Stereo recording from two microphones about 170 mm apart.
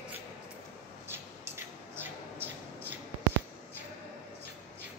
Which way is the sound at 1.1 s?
15° right (ahead or behind).